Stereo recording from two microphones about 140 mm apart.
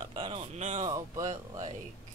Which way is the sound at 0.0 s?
35° right (ahead or behind).